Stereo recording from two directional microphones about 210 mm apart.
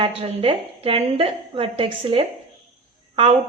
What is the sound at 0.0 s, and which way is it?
A woman's voice, 25° right (ahead or behind).